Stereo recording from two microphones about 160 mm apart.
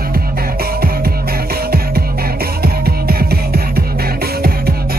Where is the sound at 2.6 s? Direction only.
75° right (ahead or behind).